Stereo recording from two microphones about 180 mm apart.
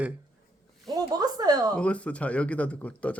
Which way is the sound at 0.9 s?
20° right (ahead or behind).